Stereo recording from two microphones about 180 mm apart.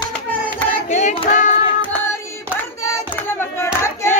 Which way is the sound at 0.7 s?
40° left (ahead or behind).